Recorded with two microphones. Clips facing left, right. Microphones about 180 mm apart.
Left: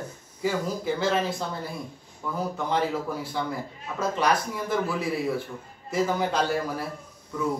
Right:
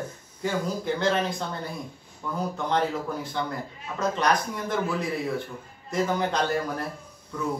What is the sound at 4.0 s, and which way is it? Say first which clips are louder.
Speech: even; 5° left (ahead or behind).